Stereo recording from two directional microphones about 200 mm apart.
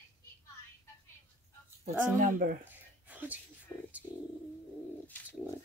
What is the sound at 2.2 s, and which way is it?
Speech, 45° right (ahead or behind).